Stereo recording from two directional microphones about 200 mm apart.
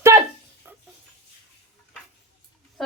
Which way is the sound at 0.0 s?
10° right (ahead or behind).